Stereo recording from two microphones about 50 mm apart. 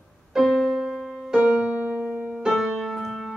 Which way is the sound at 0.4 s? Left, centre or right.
Centre.